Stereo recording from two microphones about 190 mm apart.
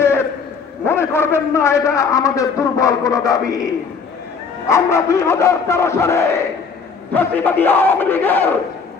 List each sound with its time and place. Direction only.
0.0 s a sound: 15° left (ahead or behind)
0.9 s a man's voice: 15° left (ahead or behind)
4.7 s a man's voice: 15° left (ahead or behind)